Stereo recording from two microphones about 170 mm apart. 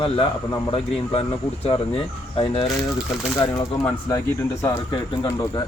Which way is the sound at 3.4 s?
25° left (ahead or behind).